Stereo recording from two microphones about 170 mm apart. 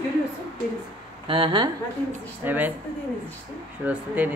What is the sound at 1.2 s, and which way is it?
Speech, 30° right (ahead or behind).